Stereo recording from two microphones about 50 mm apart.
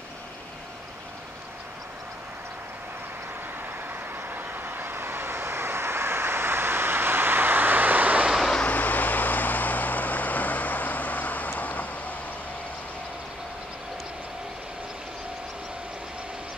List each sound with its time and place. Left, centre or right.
3.9 s vehicle: right
8.6 s vehicle: left